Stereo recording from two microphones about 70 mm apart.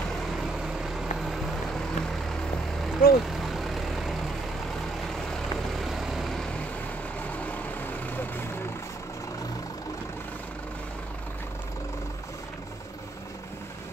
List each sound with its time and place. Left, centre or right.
0.3 s vehicle: centre
7.2 s vehicle: left